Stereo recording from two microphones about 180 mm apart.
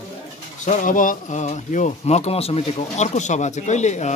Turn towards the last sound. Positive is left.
turn(degrees=40)  # may be behind; listen again after turning